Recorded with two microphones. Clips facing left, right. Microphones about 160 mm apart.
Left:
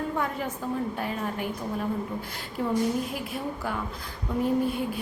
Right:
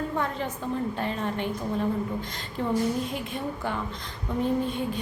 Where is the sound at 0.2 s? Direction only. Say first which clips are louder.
Even; 10° left (ahead or behind).